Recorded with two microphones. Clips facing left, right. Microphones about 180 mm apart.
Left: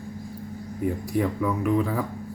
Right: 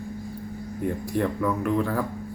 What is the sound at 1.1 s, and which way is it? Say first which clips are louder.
Speech: right 1 dB; 5° left (ahead or behind).